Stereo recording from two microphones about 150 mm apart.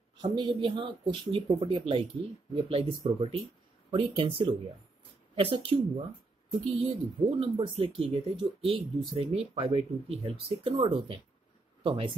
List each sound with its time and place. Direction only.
0.2 s speech: 30° right (ahead or behind)